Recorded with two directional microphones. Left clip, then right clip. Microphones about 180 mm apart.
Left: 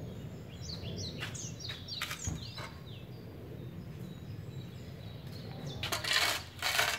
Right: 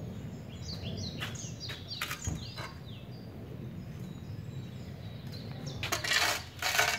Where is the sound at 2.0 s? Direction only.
30° right (ahead or behind).